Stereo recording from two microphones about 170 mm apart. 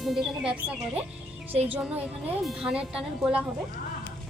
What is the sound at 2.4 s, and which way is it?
Speech, 5° right (ahead or behind).